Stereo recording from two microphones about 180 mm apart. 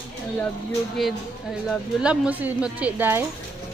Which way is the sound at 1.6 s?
5° right (ahead or behind).